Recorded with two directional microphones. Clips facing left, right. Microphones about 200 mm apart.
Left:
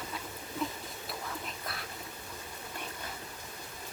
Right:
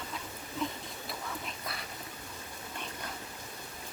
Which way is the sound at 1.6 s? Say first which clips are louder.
Even; centre (ahead or behind).